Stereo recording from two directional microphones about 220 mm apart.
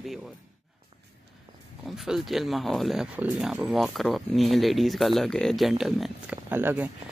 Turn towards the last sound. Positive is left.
turn(degrees=-10)  # may be behind; listen again after turning